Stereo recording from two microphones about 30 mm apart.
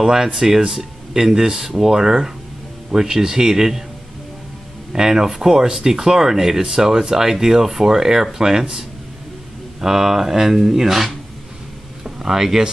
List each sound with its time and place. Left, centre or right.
0.0 s speech: centre
4.9 s speech: right
9.8 s speech: centre
12.0 s a sound: centre